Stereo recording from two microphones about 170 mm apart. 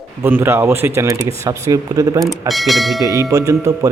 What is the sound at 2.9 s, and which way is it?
Speech, 20° right (ahead or behind).